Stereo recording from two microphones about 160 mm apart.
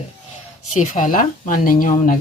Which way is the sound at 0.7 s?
50° left (ahead or behind).